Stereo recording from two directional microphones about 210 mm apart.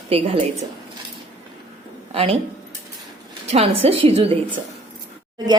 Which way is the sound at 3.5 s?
30° right (ahead or behind).